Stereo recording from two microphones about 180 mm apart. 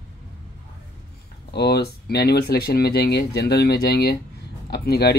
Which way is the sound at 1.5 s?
65° left (ahead or behind).